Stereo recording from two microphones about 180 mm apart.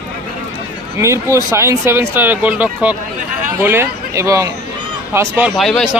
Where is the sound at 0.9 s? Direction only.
15° right (ahead or behind).